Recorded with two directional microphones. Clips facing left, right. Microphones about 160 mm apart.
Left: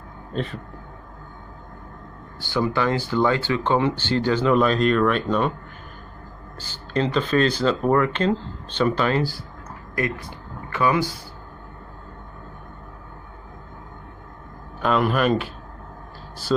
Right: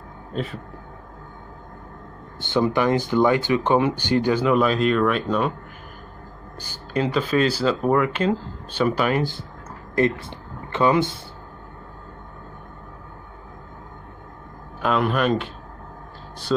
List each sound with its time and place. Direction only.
0.3 s speech: 5° right (ahead or behind)
2.3 s speech: 20° right (ahead or behind); by 5.5 s centre (ahead or behind)
6.6 s speech: 10° right (ahead or behind)
14.8 s speech: centre (ahead or behind)